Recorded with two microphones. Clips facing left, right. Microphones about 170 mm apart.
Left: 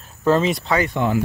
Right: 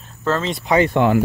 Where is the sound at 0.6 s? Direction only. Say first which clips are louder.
Right 4 dB; 20° right (ahead or behind).